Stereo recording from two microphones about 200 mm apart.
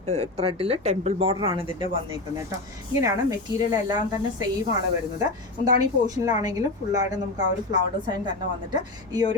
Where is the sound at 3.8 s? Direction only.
20° right (ahead or behind).